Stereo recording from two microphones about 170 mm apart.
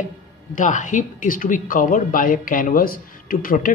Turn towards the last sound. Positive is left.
turn(degrees=55)  # may be behind; listen again after turning